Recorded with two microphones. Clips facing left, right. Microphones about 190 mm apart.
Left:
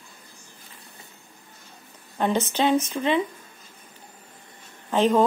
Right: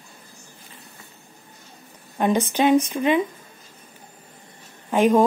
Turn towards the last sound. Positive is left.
turn(degrees=-10)  # may be behind; listen again after turning